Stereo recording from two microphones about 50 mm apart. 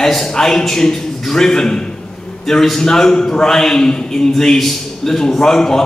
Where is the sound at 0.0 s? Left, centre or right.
Centre.